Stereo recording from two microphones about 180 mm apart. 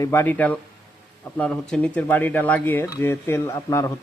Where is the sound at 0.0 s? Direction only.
15° left (ahead or behind).